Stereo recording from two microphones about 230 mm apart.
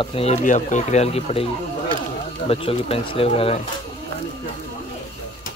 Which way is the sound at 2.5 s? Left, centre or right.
Left.